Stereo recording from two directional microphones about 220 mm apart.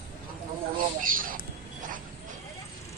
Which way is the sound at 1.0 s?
40° right (ahead or behind).